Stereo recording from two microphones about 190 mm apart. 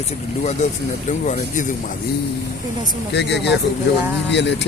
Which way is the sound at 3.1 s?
65° left (ahead or behind).